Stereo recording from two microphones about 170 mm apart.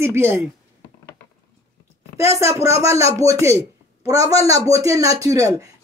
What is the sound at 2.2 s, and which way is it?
Speech, 15° right (ahead or behind).